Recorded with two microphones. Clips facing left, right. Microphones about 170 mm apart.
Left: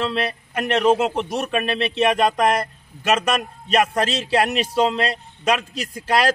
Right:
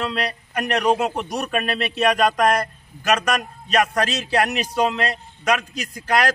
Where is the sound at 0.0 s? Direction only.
25° left (ahead or behind).